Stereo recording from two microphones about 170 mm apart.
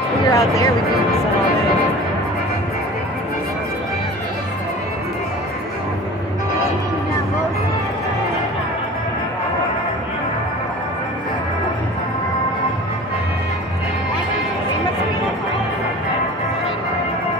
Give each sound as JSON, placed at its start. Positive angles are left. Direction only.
{"t": 0.3, "sound": "speech", "side_deg": 20}